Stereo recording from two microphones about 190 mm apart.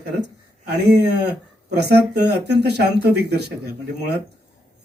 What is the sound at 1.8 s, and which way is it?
Speech, 60° right (ahead or behind).